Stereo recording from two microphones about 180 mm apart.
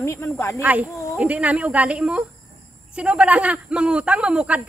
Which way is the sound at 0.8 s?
15° left (ahead or behind).